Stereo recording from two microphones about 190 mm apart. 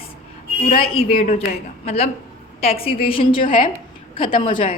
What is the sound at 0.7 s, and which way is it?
A woman's voice, 30° left (ahead or behind).